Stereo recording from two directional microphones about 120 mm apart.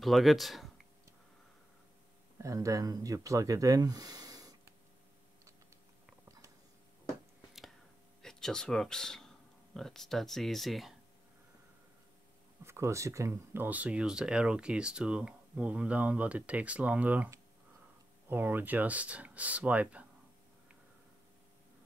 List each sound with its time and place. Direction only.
0.0 s speech: centre (ahead or behind)
2.4 s speech: 25° right (ahead or behind)
8.2 s speech: 5° left (ahead or behind)
12.6 s speech: 25° right (ahead or behind)
18.3 s speech: 15° right (ahead or behind)